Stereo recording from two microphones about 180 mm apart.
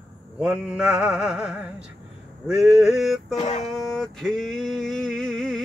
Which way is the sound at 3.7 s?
Centre (ahead or behind).